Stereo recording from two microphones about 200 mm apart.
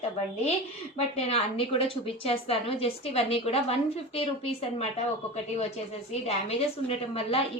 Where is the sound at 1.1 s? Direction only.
30° left (ahead or behind).